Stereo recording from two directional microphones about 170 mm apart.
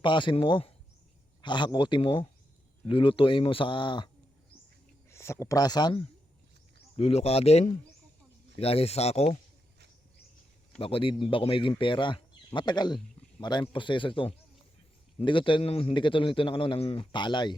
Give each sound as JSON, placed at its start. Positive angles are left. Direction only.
{"t": 0.0, "sound": "a man's voice", "side_deg": 30}
{"t": 5.1, "sound": "a man's voice", "side_deg": 15}
{"t": 10.8, "sound": "a man's voice", "side_deg": 35}